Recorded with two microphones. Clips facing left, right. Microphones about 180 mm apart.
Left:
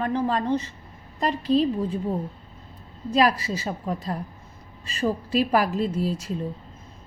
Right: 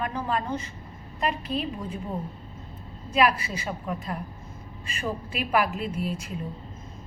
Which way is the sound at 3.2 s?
35° left (ahead or behind).